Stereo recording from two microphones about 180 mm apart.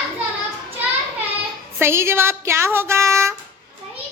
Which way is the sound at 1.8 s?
15° right (ahead or behind).